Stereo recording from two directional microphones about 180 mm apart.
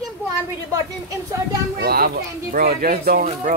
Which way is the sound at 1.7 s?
60° right (ahead or behind).